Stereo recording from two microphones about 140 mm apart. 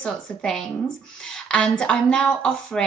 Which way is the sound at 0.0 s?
5° left (ahead or behind).